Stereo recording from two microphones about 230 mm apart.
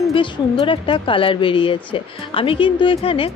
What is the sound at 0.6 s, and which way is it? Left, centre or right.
A woman's voice, left.